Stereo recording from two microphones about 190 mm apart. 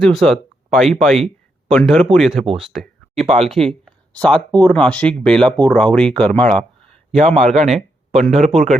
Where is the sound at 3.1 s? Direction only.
35° right (ahead or behind).